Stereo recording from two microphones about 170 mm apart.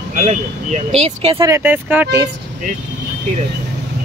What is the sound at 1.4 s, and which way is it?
Speech, 15° right (ahead or behind).